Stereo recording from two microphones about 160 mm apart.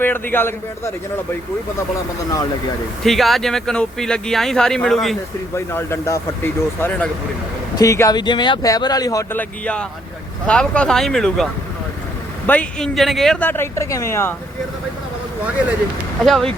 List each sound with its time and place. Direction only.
0.0 s speech: 10° left (ahead or behind)
3.0 s speech: centre (ahead or behind)
5.5 s speech: 15° left (ahead or behind)
12.5 s speech: 5° left (ahead or behind)
16.2 s speech: centre (ahead or behind)